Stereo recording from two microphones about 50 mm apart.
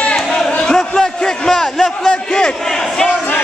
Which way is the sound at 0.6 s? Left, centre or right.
Centre.